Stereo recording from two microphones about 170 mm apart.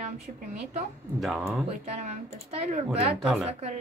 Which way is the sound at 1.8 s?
40° right (ahead or behind).